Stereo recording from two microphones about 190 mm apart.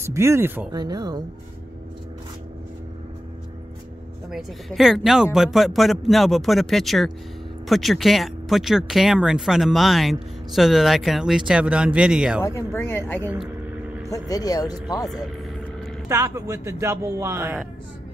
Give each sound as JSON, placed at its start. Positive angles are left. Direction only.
{"t": 0.0, "sound": "speech", "side_deg": -15}
{"t": 4.3, "sound": "speech", "side_deg": 0}
{"t": 12.4, "sound": "speech", "side_deg": 15}
{"t": 16.1, "sound": "speech", "side_deg": -15}